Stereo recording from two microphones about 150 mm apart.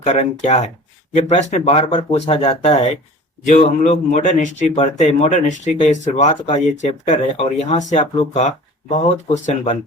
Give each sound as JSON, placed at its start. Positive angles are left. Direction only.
{"t": 0.0, "sound": "speech", "side_deg": 50}